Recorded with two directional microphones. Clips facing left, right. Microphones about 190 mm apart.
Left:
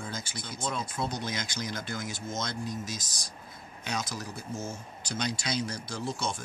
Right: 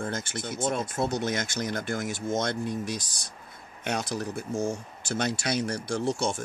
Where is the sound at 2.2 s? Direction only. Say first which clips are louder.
Right 8 dB; 65° right (ahead or behind).